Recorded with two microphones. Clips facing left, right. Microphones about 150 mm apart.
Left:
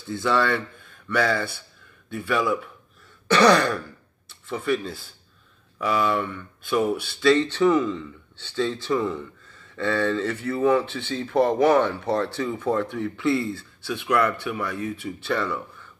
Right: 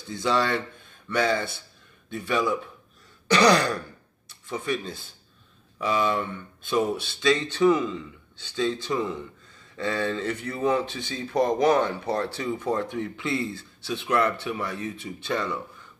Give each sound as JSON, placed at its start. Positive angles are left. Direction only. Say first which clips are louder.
{"t": 0.1, "sound": "speech", "louder": "left 2 dB", "side_deg": -20}
{"t": 3.3, "sound": "throat clearing", "louder": "left 2 dB", "side_deg": -15}
{"t": 3.5, "sound": "throat clearing", "louder": "left 2 dB", "side_deg": -35}
{"t": 4.3, "sound": "a sound", "louder": "left 4 dB", "side_deg": -15}
{"t": 4.8, "sound": "speech", "louder": "left 3 dB", "side_deg": -20}